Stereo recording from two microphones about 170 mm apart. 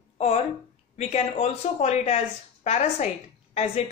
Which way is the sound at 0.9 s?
40° left (ahead or behind).